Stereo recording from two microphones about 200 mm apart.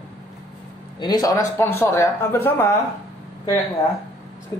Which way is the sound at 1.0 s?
20° left (ahead or behind).